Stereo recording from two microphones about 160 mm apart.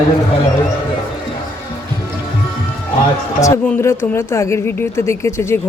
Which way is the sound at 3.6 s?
15° left (ahead or behind).